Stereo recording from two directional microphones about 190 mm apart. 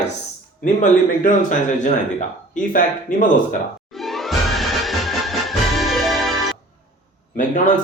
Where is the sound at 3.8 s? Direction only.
Centre (ahead or behind).